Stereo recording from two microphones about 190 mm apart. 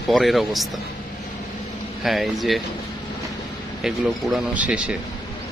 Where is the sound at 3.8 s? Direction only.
5° right (ahead or behind).